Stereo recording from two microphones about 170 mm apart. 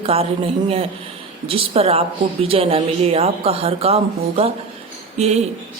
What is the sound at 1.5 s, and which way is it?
Speech, 35° right (ahead or behind).